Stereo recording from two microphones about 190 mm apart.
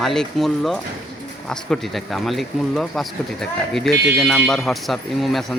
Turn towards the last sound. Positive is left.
turn(degrees=0)  # may be behind; listen again after turning